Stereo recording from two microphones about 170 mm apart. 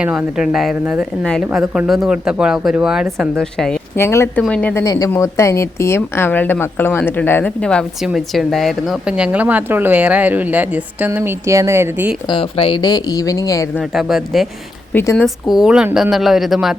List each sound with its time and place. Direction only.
0.0 s a woman's voice: 5° right (ahead or behind)
3.9 s a woman's voice: 15° left (ahead or behind); by 12.1 s 10° right (ahead or behind)
12.3 s speech: 35° left (ahead or behind)
13.7 s a woman's voice: centre (ahead or behind)